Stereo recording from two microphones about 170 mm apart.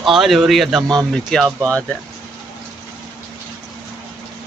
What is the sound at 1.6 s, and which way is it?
Speech, 15° right (ahead or behind).